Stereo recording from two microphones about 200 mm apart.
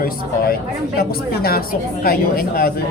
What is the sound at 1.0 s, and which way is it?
A man's voice, 50° left (ahead or behind).